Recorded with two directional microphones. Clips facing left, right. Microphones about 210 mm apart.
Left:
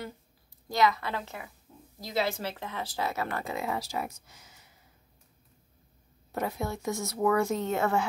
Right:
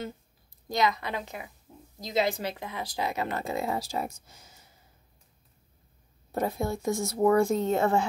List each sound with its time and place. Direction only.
0.7 s speech: 20° right (ahead or behind)
6.3 s speech: 30° right (ahead or behind)